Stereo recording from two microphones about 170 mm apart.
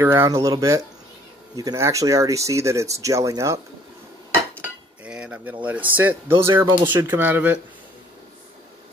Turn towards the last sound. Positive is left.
turn(degrees=-10)  # may be behind; listen again after turning